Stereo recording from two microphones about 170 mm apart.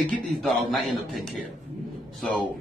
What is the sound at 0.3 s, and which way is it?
Speech, centre (ahead or behind).